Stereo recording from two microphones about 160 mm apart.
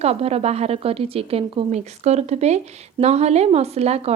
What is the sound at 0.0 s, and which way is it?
A woman's voice, 40° right (ahead or behind).